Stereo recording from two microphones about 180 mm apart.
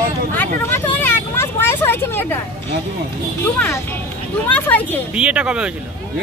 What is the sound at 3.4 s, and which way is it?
Speech, 10° left (ahead or behind).